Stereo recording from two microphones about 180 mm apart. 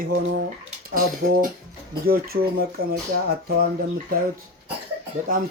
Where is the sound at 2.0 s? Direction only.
55° right (ahead or behind).